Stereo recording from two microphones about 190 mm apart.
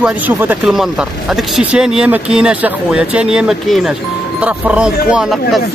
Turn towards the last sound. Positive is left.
turn(degrees=0)  # may be behind; listen again after turning